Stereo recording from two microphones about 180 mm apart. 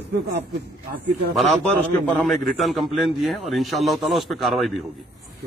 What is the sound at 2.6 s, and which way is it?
A man's voice, centre (ahead or behind).